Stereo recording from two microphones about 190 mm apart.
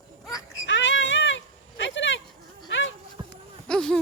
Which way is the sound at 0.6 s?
75° left (ahead or behind).